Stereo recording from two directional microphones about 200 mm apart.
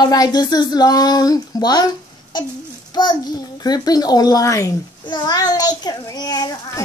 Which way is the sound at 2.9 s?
20° left (ahead or behind).